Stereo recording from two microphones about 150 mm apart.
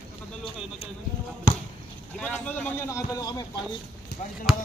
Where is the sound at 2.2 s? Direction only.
10° left (ahead or behind).